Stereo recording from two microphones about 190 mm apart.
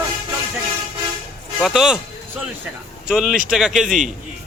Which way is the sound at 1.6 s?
Centre (ahead or behind).